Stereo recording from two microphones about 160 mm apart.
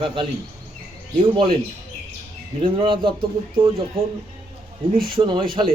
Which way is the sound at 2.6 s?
30° right (ahead or behind).